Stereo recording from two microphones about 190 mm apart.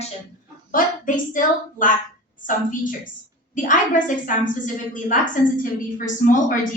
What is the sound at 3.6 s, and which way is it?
Speech, 45° left (ahead or behind).